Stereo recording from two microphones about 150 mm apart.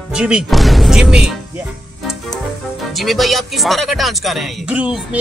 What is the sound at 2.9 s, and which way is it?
Speech, centre (ahead or behind).